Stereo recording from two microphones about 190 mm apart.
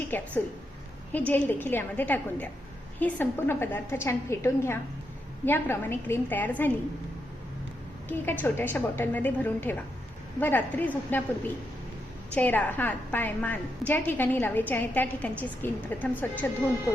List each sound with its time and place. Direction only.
0.0 s a woman's voice: 10° left (ahead or behind)
8.0 s a woman's voice: 10° left (ahead or behind)
12.3 s a woman's voice: 10° left (ahead or behind)